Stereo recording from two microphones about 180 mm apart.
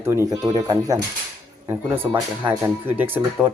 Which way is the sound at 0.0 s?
15° right (ahead or behind).